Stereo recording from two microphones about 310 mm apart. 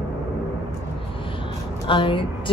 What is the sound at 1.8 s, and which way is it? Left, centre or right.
Speech, centre.